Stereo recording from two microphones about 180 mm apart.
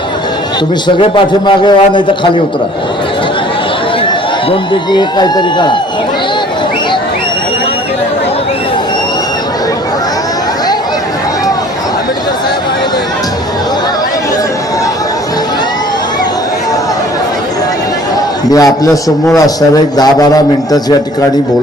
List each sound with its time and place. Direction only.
0.9 s a man's voice: 25° left (ahead or behind)
4.4 s a man's voice: 25° left (ahead or behind)
18.5 s a man's voice: 20° left (ahead or behind)